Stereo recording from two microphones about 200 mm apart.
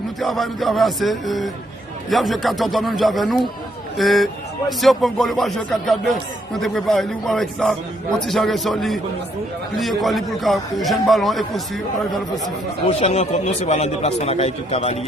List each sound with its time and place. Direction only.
0.2 s speech: centre (ahead or behind)
12.9 s a man's voice: 35° left (ahead or behind)